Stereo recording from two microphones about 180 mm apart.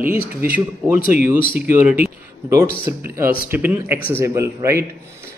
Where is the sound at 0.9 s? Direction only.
50° left (ahead or behind).